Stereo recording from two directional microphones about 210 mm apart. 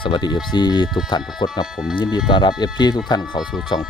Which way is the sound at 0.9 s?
Centre (ahead or behind).